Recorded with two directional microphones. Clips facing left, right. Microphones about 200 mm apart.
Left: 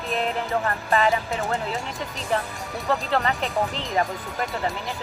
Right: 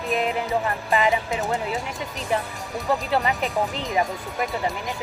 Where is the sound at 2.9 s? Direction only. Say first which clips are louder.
Right 1 dB; 10° right (ahead or behind).